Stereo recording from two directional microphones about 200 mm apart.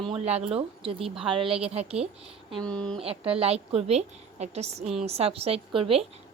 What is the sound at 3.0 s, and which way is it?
Speech, 30° right (ahead or behind).